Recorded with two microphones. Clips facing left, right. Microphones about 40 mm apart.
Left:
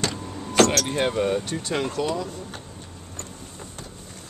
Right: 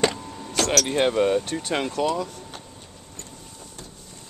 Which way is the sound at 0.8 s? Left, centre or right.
Centre.